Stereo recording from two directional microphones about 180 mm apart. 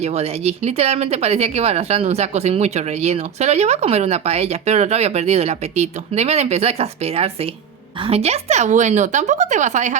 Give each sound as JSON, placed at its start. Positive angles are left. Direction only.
{"t": 0.0, "sound": "speech", "side_deg": -35}